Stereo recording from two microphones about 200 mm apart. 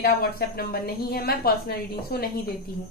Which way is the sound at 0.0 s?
50° left (ahead or behind).